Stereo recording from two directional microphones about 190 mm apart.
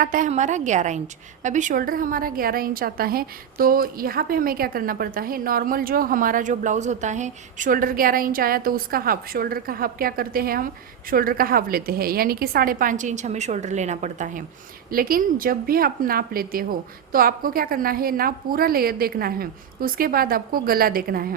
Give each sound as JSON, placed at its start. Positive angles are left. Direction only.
{"t": 0.0, "sound": "a woman's voice", "side_deg": -45}
{"t": 14.8, "sound": "a woman's voice", "side_deg": -50}